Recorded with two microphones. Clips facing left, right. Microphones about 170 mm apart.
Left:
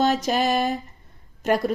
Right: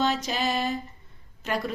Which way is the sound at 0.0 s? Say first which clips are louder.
Left 5 dB; 45° left (ahead or behind).